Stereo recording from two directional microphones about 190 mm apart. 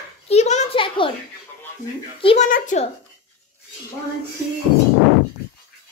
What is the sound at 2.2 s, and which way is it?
Speech, 30° left (ahead or behind).